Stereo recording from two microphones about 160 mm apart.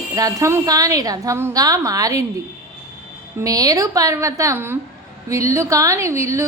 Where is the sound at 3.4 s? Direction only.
20° right (ahead or behind).